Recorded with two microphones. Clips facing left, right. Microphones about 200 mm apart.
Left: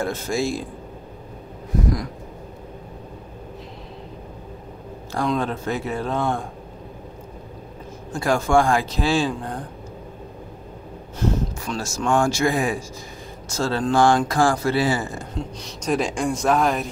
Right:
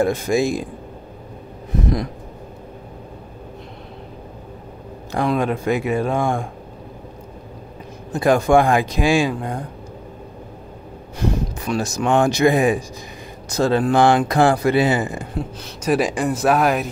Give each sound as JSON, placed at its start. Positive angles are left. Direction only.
{"t": 0.0, "sound": "speech", "side_deg": -15}
{"t": 5.3, "sound": "speech", "side_deg": -15}
{"t": 8.1, "sound": "speech", "side_deg": -20}
{"t": 11.1, "sound": "speech", "side_deg": -15}
{"t": 15.3, "sound": "speech", "side_deg": -5}